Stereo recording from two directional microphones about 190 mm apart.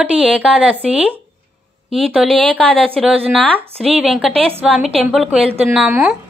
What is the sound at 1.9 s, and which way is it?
Speech, centre (ahead or behind).